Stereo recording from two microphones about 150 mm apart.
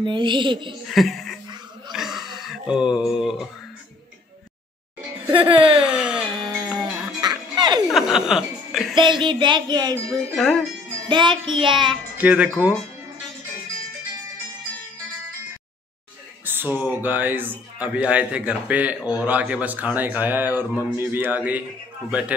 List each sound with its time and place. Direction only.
0.0 s speech: 30° right (ahead or behind)
0.8 s speech: centre (ahead or behind)
1.9 s a sound: centre (ahead or behind)
5.3 s speech: 35° right (ahead or behind)
5.8 s music: 5° right (ahead or behind)
7.2 s music: 30° right (ahead or behind)
7.9 s music: 5° right (ahead or behind)
8.9 s speech: 30° right (ahead or behind)
10.3 s speech: centre (ahead or behind)
11.1 s speech: 30° right (ahead or behind)
12.2 s speech: 10° right (ahead or behind)
16.4 s speech: 15° right (ahead or behind)